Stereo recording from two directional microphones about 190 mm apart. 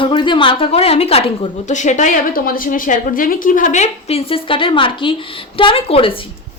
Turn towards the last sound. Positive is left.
turn(degrees=30)  # may be behind; listen again after turning